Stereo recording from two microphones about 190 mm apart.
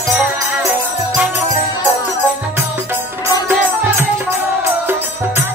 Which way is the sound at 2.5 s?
10° right (ahead or behind).